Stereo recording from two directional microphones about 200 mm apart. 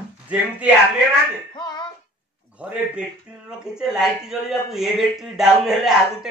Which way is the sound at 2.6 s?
5° right (ahead or behind).